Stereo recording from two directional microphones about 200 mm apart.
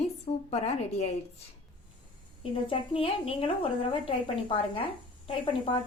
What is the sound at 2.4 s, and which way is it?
A woman's voice, 25° left (ahead or behind).